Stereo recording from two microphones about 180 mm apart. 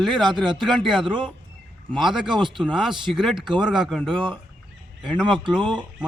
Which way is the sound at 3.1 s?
Centre (ahead or behind).